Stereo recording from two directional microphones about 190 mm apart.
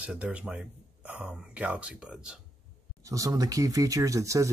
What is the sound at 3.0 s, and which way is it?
Speech, 15° right (ahead or behind).